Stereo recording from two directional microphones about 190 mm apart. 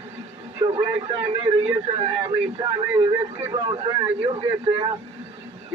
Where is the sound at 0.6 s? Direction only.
25° right (ahead or behind).